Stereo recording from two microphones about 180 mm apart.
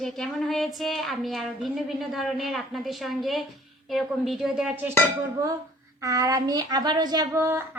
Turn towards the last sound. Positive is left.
turn(degrees=-15)  # may be behind; listen again after turning